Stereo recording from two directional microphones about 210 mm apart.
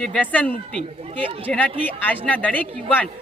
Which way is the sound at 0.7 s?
25° right (ahead or behind).